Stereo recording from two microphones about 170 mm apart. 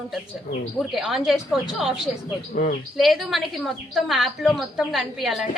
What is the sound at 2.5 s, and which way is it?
Speech, 55° left (ahead or behind).